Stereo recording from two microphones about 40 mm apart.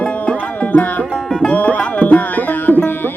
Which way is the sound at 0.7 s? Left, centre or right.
Left.